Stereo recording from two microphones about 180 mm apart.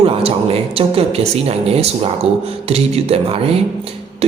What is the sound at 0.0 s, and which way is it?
Speech, 30° right (ahead or behind).